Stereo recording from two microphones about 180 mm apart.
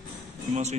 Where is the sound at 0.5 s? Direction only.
40° right (ahead or behind).